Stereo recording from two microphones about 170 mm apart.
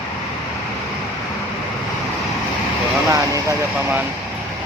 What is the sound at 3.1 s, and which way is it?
Speech, 20° right (ahead or behind).